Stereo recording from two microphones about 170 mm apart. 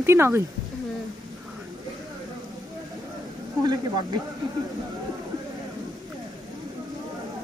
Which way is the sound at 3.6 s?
25° right (ahead or behind).